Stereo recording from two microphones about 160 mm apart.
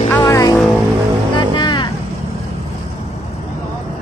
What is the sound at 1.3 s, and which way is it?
Music, 30° left (ahead or behind).